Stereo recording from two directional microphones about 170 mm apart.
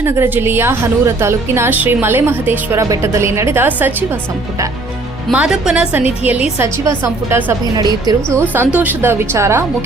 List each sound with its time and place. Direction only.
0.0 s a woman's voice: 15° right (ahead or behind)
5.3 s a woman's voice: 5° right (ahead or behind)
7.6 s a woman's voice: 25° right (ahead or behind)